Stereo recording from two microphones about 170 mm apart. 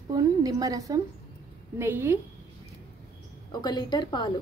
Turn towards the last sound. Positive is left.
turn(degrees=25)  # may be behind; listen again after turning